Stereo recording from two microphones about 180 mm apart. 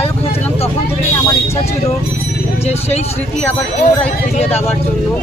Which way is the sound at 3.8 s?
35° left (ahead or behind).